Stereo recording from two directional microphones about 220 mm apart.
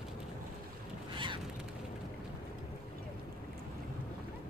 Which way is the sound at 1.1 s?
20° right (ahead or behind).